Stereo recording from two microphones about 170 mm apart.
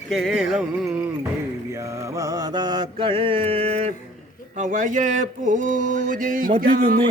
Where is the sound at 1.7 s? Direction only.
15° right (ahead or behind); by 6.5 s 55° right (ahead or behind).